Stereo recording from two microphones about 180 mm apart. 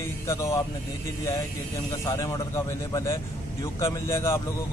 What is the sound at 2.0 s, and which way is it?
Speech, 15° left (ahead or behind).